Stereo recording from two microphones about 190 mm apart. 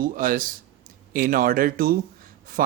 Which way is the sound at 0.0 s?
45° right (ahead or behind).